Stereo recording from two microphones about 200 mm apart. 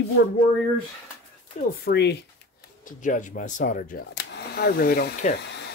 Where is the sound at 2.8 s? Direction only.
40° left (ahead or behind).